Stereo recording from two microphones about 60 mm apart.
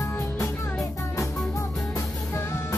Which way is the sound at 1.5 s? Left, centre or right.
Left.